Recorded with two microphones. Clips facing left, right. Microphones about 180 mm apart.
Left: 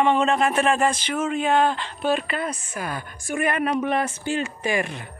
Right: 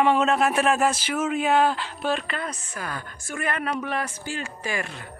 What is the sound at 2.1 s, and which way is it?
A woman's voice, 10° left (ahead or behind).